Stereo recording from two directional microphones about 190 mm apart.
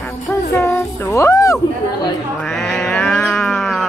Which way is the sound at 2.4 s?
Centre (ahead or behind).